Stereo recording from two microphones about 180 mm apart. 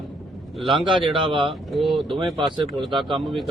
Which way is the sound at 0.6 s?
25° right (ahead or behind).